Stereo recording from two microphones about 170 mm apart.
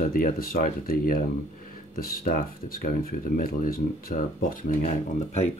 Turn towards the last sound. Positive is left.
turn(degrees=45)  # may be behind; listen again after turning